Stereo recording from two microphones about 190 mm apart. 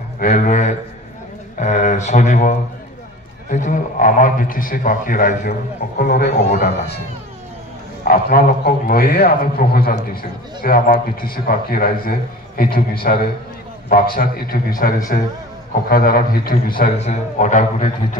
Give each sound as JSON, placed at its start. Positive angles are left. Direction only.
{"t": 0.2, "sound": "a sound", "side_deg": 45}
{"t": 3.4, "sound": "a man's voice", "side_deg": 40}
{"t": 8.1, "sound": "a man's voice", "side_deg": 50}
{"t": 17.0, "sound": "a man's voice", "side_deg": 40}